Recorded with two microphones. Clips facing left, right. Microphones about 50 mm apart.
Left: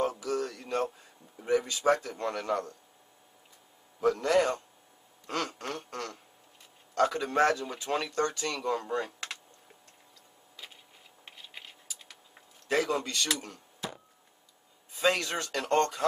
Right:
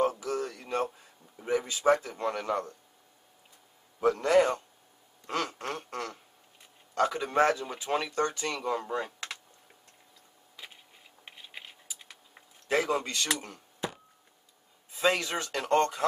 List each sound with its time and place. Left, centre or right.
0.2 s a sound: centre
0.9 s a man's voice: centre
4.0 s speech: centre
5.2 s a sound: centre
5.7 s speech: centre
11.2 s typing: centre
15.0 s speech: centre